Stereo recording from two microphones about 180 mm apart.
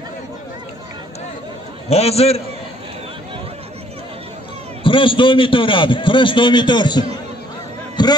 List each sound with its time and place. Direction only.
1.9 s a man's voice: 35° left (ahead or behind)
4.8 s a man's voice: 30° left (ahead or behind)
7.9 s a sound: 25° left (ahead or behind)